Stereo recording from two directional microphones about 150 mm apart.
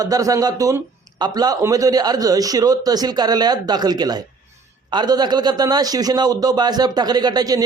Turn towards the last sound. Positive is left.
turn(degrees=-25)  # may be behind; listen again after turning